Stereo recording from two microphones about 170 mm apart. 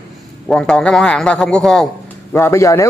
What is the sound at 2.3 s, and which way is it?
Speech, 15° left (ahead or behind).